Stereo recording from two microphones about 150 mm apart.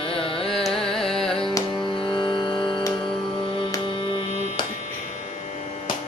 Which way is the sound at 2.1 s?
30° left (ahead or behind).